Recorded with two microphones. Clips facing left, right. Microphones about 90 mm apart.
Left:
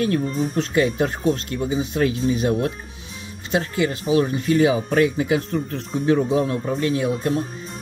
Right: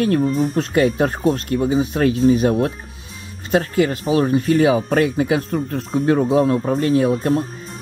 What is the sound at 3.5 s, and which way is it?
Speech, 45° right (ahead or behind).